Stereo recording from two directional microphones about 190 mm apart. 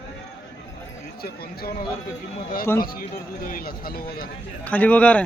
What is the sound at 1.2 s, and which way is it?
Speech, 50° left (ahead or behind).